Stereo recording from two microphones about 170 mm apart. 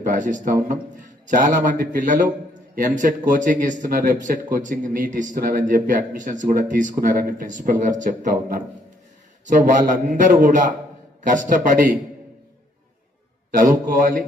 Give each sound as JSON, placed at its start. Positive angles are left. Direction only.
{"t": 0.0, "sound": "speech", "side_deg": -50}
{"t": 13.5, "sound": "speech", "side_deg": -50}